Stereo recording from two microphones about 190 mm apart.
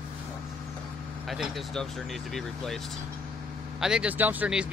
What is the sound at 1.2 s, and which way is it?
Speech, centre (ahead or behind).